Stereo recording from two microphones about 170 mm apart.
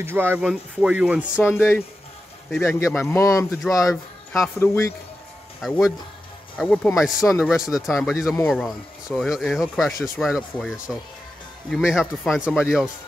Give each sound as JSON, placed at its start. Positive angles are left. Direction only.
{"t": 0.0, "sound": "speech", "side_deg": -15}
{"t": 1.5, "sound": "speech", "side_deg": 15}
{"t": 3.9, "sound": "speech", "side_deg": 0}
{"t": 4.6, "sound": "speech", "side_deg": 15}
{"t": 5.6, "sound": "speech", "side_deg": 0}